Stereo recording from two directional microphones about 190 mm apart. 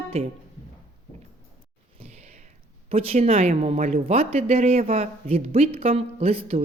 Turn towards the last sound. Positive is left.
turn(degrees=-30)  # may be behind; listen again after turning